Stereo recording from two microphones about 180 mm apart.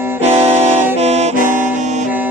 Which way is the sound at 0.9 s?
35° right (ahead or behind).